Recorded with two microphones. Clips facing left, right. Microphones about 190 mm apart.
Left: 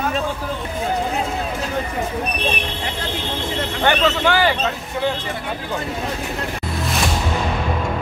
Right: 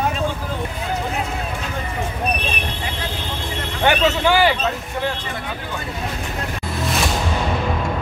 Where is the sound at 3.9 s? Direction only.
10° right (ahead or behind).